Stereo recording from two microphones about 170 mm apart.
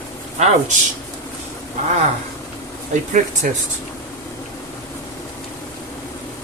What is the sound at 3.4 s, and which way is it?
Speech, 55° right (ahead or behind).